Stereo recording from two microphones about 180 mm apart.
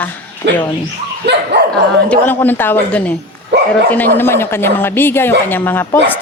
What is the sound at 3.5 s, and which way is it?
Speech, 70° right (ahead or behind).